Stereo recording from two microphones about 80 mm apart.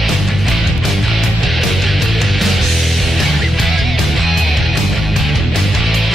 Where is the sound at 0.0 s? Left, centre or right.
Centre.